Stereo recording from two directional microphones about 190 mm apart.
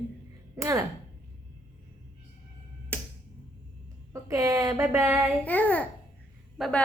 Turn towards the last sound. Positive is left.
turn(degrees=0)  # may be behind; listen again after turning